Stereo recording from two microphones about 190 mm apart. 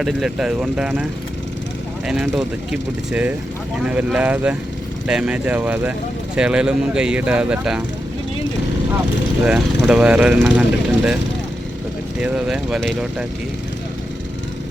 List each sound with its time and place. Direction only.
0.0 s speech: 5° right (ahead or behind)
2.0 s speech: centre (ahead or behind)
9.4 s speech: 5° right (ahead or behind)
12.2 s speech: 5° right (ahead or behind)